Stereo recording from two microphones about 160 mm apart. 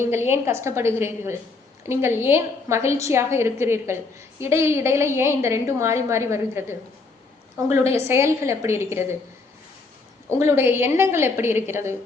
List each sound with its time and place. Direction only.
0.0 s a woman's voice: 15° right (ahead or behind)
8.0 s a woman's voice: 15° right (ahead or behind)
10.3 s a woman's voice: 15° right (ahead or behind)